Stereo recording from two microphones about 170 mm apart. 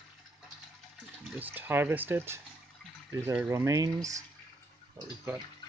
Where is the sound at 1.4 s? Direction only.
10° right (ahead or behind).